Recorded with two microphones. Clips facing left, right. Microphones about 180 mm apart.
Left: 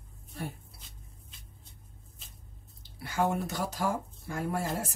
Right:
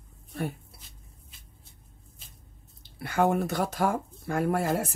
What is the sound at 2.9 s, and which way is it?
Speech, 60° right (ahead or behind).